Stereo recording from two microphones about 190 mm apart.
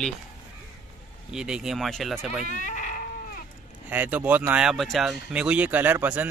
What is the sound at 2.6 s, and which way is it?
Goat, 45° left (ahead or behind).